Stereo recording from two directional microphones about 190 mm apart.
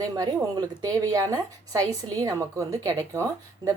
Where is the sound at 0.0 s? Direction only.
15° right (ahead or behind).